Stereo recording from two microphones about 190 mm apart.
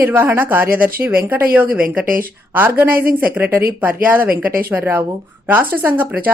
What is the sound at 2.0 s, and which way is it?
Speech, 45° right (ahead or behind).